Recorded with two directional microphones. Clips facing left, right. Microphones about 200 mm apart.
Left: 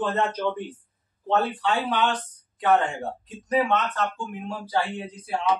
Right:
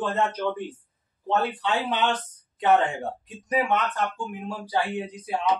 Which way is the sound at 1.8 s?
20° right (ahead or behind).